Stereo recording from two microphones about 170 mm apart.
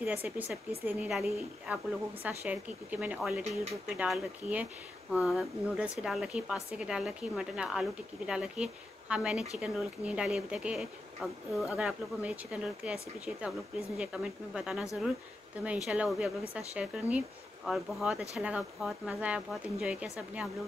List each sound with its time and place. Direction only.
0.0 s speech: 10° right (ahead or behind)